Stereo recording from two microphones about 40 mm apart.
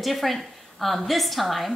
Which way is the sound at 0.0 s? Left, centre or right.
Centre.